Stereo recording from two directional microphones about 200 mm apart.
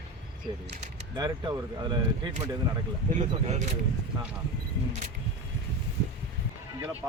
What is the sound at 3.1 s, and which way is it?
Speech, 35° right (ahead or behind).